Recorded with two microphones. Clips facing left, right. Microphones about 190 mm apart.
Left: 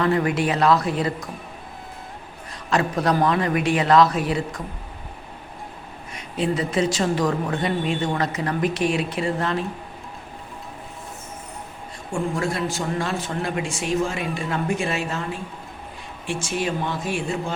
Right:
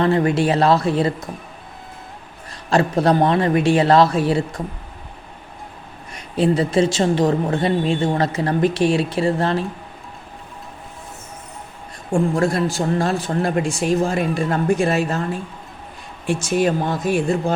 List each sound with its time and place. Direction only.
0.0 s a man's voice: 30° right (ahead or behind)
2.6 s a man's voice: 30° right (ahead or behind)
6.3 s speech: 35° right (ahead or behind)
12.1 s speech: 40° right (ahead or behind)